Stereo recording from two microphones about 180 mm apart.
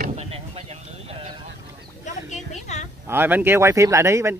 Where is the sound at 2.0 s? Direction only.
40° left (ahead or behind).